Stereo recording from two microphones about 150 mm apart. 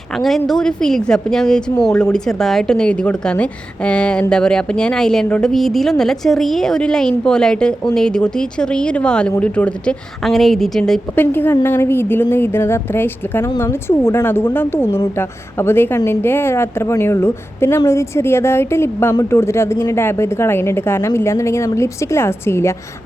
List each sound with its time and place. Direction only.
0.2 s a woman's voice: centre (ahead or behind)